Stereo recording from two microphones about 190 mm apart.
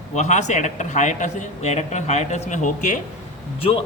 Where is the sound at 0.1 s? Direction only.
40° left (ahead or behind).